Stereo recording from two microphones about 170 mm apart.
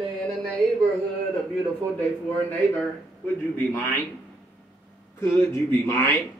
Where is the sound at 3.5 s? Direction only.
10° left (ahead or behind).